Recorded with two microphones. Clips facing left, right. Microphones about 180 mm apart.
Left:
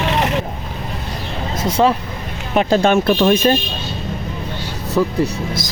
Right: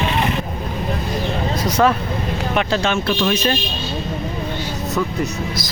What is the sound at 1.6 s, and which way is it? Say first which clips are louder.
Speech: left 2 dB; 30° left (ahead or behind).